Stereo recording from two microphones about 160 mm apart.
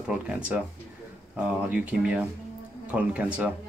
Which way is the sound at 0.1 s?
5° right (ahead or behind).